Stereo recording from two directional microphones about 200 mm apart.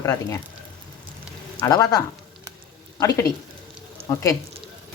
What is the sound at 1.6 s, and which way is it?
Speech, 15° left (ahead or behind).